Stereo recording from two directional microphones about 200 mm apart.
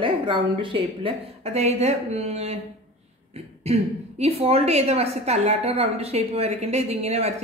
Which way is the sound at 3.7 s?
30° right (ahead or behind).